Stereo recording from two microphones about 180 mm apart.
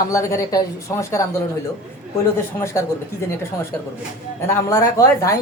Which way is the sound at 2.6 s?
15° left (ahead or behind).